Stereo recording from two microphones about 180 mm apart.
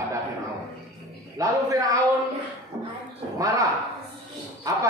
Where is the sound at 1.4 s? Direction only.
20° right (ahead or behind).